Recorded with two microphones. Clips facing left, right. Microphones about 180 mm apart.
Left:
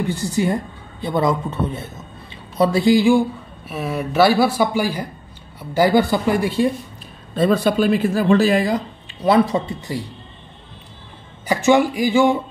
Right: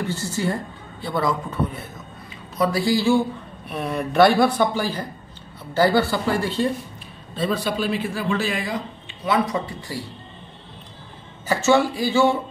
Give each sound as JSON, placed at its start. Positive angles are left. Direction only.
{"t": 0.0, "sound": "speech", "side_deg": 15}
{"t": 3.6, "sound": "speech", "side_deg": 0}
{"t": 7.3, "sound": "speech", "side_deg": 50}
{"t": 9.7, "sound": "speech", "side_deg": 20}
{"t": 11.4, "sound": "speech", "side_deg": 15}